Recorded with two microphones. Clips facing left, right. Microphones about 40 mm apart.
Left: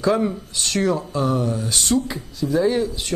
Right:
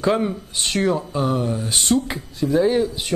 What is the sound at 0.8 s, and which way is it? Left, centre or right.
Speech, centre.